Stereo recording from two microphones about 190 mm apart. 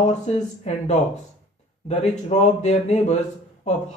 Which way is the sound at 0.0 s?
35° left (ahead or behind).